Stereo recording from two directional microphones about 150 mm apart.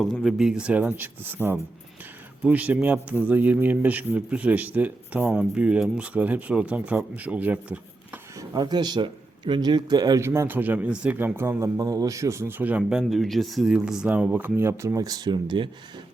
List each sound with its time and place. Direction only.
0.0 s speech: centre (ahead or behind)
8.4 s speech: 25° right (ahead or behind)